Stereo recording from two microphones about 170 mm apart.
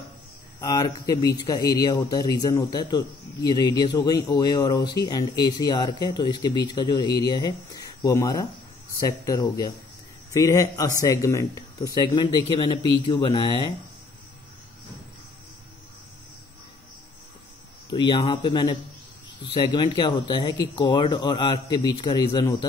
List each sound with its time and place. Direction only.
0.6 s speech: 20° left (ahead or behind)
17.9 s speech: 25° left (ahead or behind)